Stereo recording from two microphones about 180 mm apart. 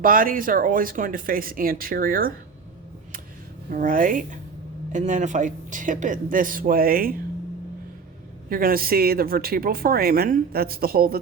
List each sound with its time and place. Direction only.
0.0 s speech: 50° right (ahead or behind)
3.7 s speech: 50° right (ahead or behind)
8.4 s speech: 50° right (ahead or behind)